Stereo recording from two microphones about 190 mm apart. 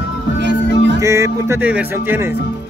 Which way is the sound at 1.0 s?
15° right (ahead or behind).